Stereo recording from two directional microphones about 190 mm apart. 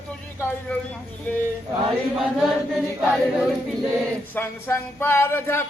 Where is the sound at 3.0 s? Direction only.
Centre (ahead or behind).